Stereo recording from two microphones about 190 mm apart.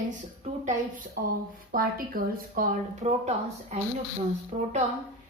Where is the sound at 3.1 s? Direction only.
35° right (ahead or behind).